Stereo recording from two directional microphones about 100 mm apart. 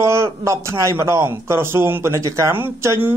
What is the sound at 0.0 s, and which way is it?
A man's voice, 30° right (ahead or behind).